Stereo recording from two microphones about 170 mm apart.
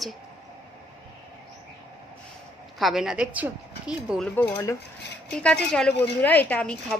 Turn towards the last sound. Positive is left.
turn(degrees=5)  # may be behind; listen again after turning